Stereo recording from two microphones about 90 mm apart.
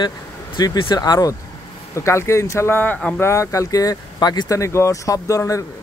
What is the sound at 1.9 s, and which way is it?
Speech, 30° left (ahead or behind).